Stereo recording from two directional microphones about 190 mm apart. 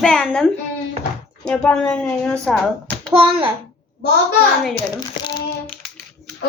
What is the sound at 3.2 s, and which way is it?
Speech, 30° right (ahead or behind).